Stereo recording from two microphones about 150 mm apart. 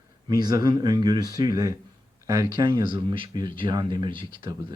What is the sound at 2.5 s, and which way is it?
Speech, 35° right (ahead or behind).